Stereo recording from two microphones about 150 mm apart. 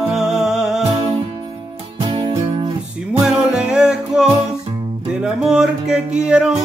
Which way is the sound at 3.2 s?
5° right (ahead or behind).